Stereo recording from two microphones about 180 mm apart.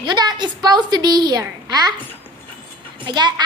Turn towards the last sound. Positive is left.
turn(degrees=-25)  # may be behind; listen again after turning